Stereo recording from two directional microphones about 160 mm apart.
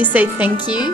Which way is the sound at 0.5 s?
25° left (ahead or behind).